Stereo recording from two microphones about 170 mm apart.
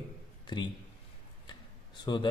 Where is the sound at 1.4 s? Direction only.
25° left (ahead or behind).